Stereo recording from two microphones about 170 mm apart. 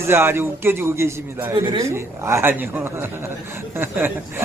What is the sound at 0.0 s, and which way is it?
A man's voice, 15° right (ahead or behind).